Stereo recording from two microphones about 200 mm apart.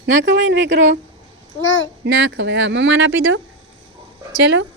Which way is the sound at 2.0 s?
70° right (ahead or behind).